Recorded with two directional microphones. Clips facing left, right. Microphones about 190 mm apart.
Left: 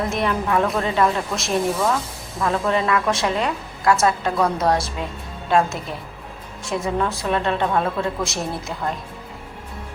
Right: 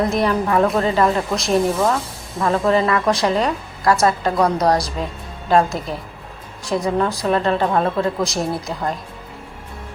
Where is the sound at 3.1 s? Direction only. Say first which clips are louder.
Right 4 dB; 35° right (ahead or behind).